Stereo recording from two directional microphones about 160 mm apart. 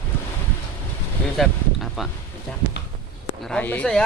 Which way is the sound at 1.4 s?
Centre (ahead or behind).